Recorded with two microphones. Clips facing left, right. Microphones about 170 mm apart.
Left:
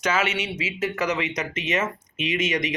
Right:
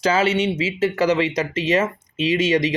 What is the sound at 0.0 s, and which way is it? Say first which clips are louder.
Speech: right 6 dB; 30° right (ahead or behind).